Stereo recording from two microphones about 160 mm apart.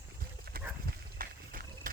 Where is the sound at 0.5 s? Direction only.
70° right (ahead or behind).